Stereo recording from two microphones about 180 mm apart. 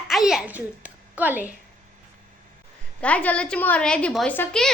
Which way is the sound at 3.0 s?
5° left (ahead or behind).